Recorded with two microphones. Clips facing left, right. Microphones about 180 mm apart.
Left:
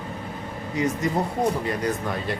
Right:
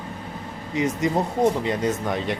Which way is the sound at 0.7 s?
20° right (ahead or behind).